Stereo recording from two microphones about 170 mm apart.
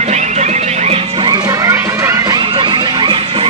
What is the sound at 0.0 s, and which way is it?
Music, 40° right (ahead or behind).